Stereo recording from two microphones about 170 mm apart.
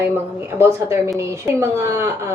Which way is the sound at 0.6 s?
15° right (ahead or behind).